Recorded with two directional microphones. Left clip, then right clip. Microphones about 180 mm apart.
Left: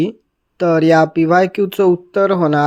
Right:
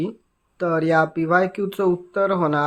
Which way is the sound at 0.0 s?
35° left (ahead or behind).